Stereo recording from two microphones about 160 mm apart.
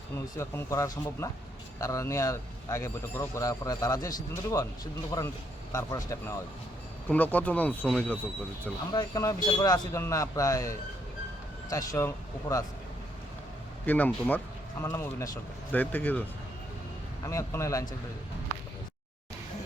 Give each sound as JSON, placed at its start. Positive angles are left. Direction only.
{"t": 0.3, "sound": "speech", "side_deg": 20}
{"t": 8.9, "sound": "speech", "side_deg": 25}
{"t": 13.8, "sound": "speech", "side_deg": 10}
{"t": 17.2, "sound": "speech", "side_deg": 20}